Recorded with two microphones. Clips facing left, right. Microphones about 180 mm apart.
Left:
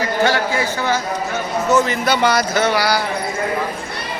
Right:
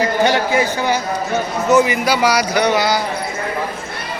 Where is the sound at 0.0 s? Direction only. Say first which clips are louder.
Right 2 dB; 15° right (ahead or behind).